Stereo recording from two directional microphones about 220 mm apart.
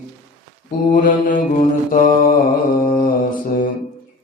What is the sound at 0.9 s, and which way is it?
Mantra, 35° left (ahead or behind).